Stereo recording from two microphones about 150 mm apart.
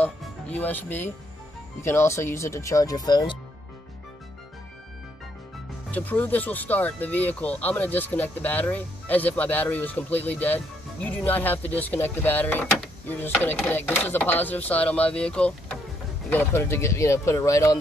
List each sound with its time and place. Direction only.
0.0 s speech: 10° left (ahead or behind); by 3.3 s 25° left (ahead or behind)
5.9 s speech: 10° left (ahead or behind)